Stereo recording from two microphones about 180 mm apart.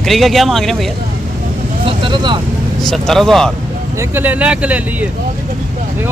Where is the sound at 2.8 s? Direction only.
Centre (ahead or behind).